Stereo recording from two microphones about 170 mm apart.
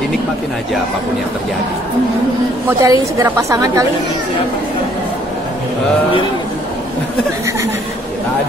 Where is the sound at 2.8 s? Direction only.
20° right (ahead or behind).